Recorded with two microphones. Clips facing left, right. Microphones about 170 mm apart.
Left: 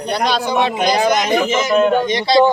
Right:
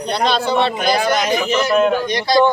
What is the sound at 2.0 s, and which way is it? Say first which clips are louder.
Speech: left 2 dB; 20° left (ahead or behind).